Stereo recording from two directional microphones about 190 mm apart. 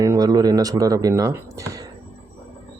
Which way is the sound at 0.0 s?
20° right (ahead or behind).